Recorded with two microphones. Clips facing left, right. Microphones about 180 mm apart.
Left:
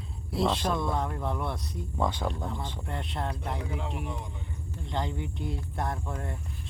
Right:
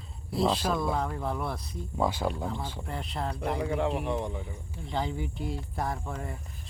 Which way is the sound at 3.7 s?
65° right (ahead or behind).